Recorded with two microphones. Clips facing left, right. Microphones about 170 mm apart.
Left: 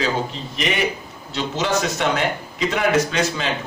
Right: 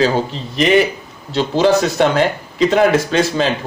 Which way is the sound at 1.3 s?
35° right (ahead or behind).